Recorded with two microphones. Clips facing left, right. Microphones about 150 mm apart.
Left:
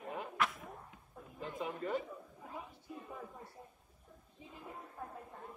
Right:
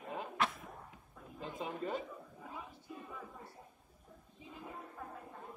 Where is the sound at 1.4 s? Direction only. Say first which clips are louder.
Left 1 dB; 25° right (ahead or behind).